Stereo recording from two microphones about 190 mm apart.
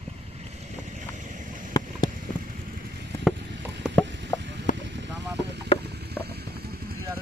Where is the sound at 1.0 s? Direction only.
40° right (ahead or behind).